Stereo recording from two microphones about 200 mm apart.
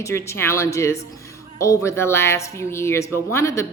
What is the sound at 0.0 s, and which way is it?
Speech, 15° left (ahead or behind).